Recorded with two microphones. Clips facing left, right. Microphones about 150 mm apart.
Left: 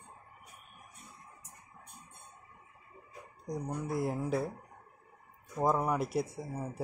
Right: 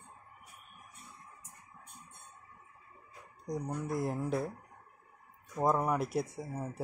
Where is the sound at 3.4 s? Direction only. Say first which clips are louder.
Even; centre (ahead or behind).